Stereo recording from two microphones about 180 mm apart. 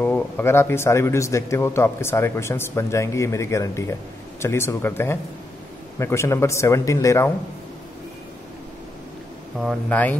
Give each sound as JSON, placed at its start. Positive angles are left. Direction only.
{"t": 0.0, "sound": "a man's voice", "side_deg": 10}
{"t": 9.6, "sound": "a man's voice", "side_deg": 5}